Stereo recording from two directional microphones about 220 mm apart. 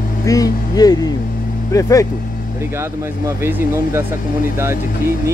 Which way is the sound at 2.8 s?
10° right (ahead or behind).